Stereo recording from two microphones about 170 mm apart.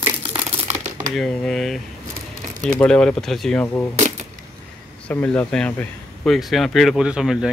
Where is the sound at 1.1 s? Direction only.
5° left (ahead or behind).